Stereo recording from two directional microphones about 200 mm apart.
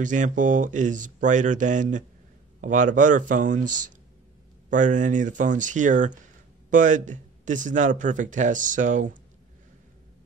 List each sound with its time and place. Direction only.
0.0 s speech: 40° right (ahead or behind)